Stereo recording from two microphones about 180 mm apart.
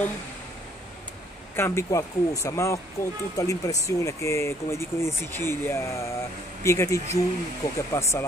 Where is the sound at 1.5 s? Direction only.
15° left (ahead or behind).